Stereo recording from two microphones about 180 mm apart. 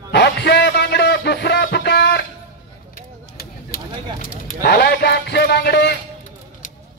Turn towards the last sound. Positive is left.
turn(degrees=60)  # may be behind; listen again after turning